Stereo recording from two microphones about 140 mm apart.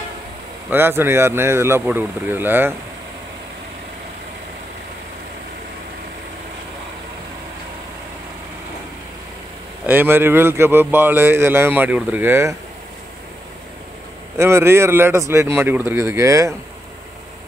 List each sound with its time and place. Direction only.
0.7 s speech: 15° right (ahead or behind)
9.8 s speech: 15° right (ahead or behind)
14.3 s speech: 20° right (ahead or behind)